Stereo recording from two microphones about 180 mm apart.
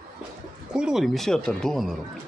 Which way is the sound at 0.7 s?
5° right (ahead or behind).